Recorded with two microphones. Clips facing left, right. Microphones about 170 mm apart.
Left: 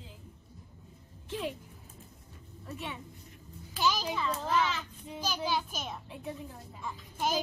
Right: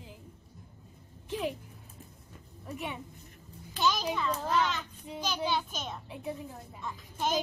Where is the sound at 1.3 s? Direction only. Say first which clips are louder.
Right 2 dB; 10° right (ahead or behind).